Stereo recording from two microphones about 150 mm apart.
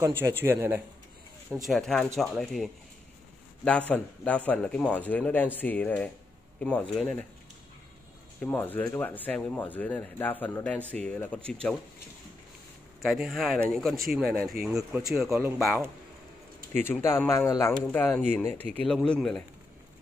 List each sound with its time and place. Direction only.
0.0 s speech: 15° right (ahead or behind)
1.6 s speech: centre (ahead or behind)
8.4 s speech: 10° left (ahead or behind)
13.0 s speech: centre (ahead or behind)
16.8 s speech: 15° left (ahead or behind)
18.5 s speech: 45° right (ahead or behind)
18.9 s speech: 5° left (ahead or behind)